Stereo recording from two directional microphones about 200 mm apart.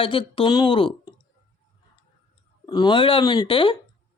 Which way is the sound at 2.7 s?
20° left (ahead or behind).